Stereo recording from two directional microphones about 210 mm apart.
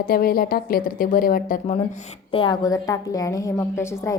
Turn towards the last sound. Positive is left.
turn(degrees=15)  # may be behind; listen again after turning